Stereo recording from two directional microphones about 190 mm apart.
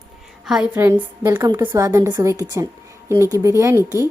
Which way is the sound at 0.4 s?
5° right (ahead or behind).